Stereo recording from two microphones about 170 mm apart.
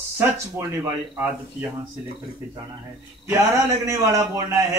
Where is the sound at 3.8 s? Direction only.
20° right (ahead or behind).